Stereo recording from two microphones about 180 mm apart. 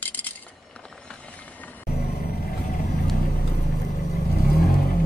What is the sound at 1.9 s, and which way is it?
Vehicle, 60° left (ahead or behind).